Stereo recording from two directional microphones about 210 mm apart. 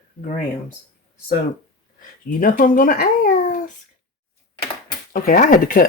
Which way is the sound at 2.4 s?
40° left (ahead or behind).